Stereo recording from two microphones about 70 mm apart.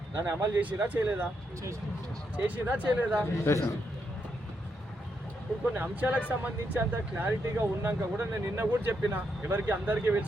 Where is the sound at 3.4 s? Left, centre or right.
Left.